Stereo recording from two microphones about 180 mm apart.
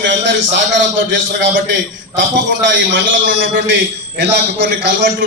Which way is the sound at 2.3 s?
90° right.